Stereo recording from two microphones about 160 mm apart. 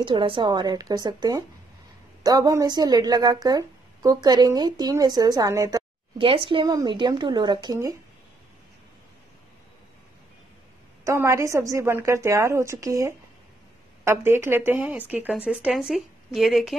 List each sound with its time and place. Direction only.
0.0 s a woman's voice: 30° right (ahead or behind)
6.1 s a woman's voice: 35° right (ahead or behind)
11.1 s speech: 20° right (ahead or behind); by 16.7 s centre (ahead or behind)